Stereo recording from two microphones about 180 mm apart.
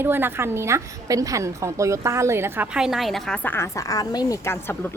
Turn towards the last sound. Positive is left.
turn(degrees=10)  # may be behind; listen again after turning